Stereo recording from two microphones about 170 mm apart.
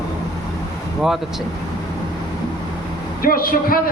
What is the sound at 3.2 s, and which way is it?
Speech, 60° left (ahead or behind).